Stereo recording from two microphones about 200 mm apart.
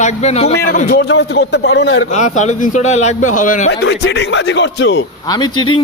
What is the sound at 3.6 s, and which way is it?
Speech, 60° left (ahead or behind).